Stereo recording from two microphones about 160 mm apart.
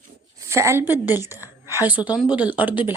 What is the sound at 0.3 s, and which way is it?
A woman's voice, 15° right (ahead or behind).